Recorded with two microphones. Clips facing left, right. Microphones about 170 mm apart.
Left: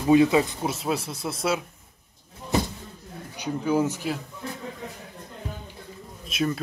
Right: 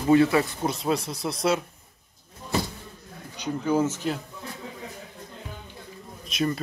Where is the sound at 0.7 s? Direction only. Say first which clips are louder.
Right 1 dB; 5° left (ahead or behind).